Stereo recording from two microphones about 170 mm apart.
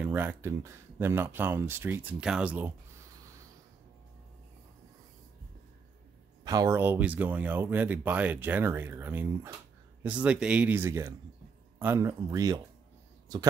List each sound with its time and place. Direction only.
0.0 s speech: 10° right (ahead or behind)
6.4 s speech: 20° right (ahead or behind)